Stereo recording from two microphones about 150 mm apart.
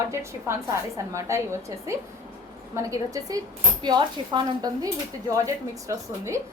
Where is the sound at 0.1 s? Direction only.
20° right (ahead or behind).